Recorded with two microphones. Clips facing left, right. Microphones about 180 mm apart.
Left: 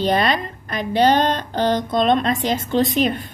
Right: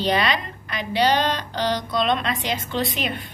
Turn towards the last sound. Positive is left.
turn(degrees=40)  # may be behind; listen again after turning